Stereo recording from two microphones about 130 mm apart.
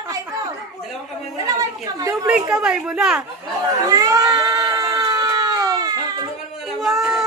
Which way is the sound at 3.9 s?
30° right (ahead or behind).